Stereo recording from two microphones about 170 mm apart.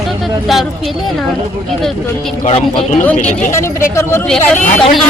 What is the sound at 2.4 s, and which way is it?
Speech, 35° left (ahead or behind).